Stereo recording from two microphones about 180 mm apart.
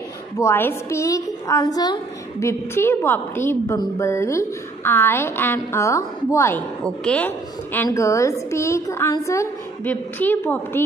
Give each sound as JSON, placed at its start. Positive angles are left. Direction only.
{"t": 0.4, "sound": "a woman's voice", "side_deg": 15}